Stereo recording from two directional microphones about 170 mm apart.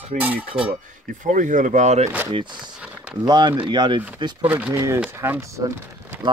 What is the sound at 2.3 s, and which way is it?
Speech, 30° right (ahead or behind).